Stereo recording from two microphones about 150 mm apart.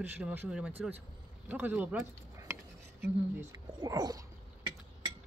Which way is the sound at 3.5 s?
25° right (ahead or behind).